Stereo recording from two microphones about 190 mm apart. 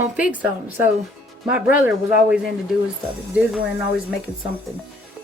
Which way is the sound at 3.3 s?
5° right (ahead or behind).